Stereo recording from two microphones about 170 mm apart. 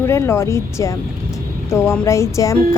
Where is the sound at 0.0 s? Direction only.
15° left (ahead or behind).